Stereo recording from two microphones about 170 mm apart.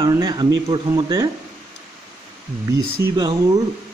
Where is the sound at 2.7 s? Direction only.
20° right (ahead or behind).